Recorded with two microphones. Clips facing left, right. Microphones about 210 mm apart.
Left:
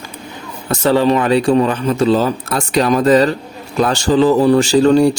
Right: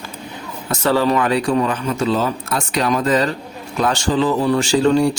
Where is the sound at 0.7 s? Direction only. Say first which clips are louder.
Left 4 dB; 25° left (ahead or behind).